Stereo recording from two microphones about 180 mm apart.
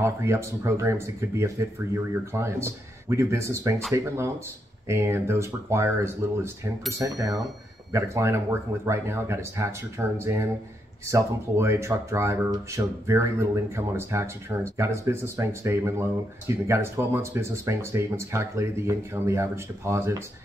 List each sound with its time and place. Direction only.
0.0 s speech: 15° right (ahead or behind)